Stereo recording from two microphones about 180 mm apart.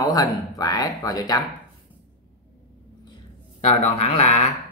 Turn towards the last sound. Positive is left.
turn(degrees=35)  # may be behind; listen again after turning